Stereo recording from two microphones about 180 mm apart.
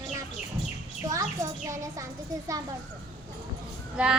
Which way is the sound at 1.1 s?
20° right (ahead or behind).